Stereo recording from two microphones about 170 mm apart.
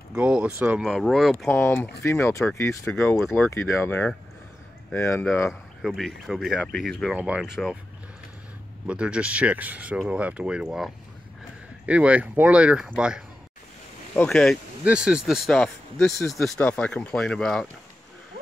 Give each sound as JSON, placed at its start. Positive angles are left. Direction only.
{"t": 0.1, "sound": "speech", "side_deg": -5}
{"t": 1.5, "sound": "speech", "side_deg": 15}
{"t": 5.5, "sound": "speech", "side_deg": 0}
{"t": 8.8, "sound": "speech", "side_deg": -5}